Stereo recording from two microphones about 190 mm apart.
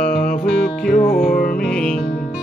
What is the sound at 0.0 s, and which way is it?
Music, 50° left (ahead or behind).